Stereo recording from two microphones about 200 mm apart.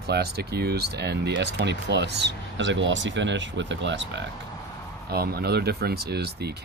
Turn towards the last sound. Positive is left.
turn(degrees=-55)  # may be behind; listen again after turning